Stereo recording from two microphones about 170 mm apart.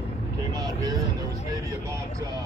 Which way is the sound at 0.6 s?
25° right (ahead or behind).